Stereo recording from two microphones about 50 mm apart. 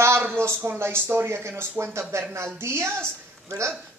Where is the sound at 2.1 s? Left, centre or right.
Right.